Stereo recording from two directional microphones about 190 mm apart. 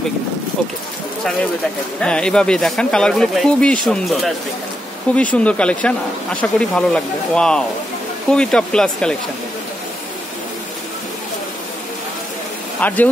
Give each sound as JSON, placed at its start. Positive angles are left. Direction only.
{"t": 2.0, "sound": "speech", "side_deg": 5}
{"t": 12.8, "sound": "speech", "side_deg": 10}